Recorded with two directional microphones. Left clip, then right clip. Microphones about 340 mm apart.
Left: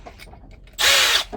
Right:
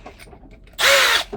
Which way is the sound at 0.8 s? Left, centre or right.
Centre.